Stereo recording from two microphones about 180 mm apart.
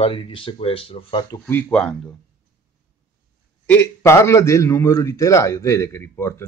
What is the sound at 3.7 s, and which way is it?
A man's voice, 15° left (ahead or behind).